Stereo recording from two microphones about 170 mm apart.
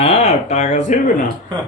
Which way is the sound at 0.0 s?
35° left (ahead or behind).